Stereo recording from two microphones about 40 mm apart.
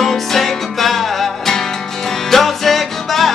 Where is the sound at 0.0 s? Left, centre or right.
Centre.